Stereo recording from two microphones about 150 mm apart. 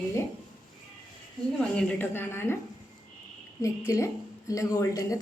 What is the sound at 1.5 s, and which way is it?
A woman's voice, 5° left (ahead or behind).